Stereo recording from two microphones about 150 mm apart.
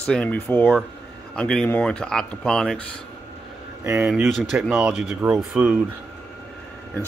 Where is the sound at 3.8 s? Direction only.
15° right (ahead or behind).